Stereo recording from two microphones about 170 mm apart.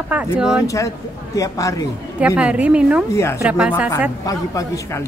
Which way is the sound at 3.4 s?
10° right (ahead or behind).